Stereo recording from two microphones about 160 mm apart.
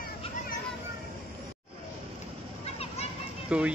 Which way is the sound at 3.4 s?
5° right (ahead or behind).